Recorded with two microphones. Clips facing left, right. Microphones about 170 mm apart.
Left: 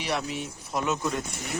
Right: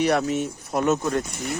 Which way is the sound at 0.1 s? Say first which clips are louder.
Right 8 dB; 50° right (ahead or behind).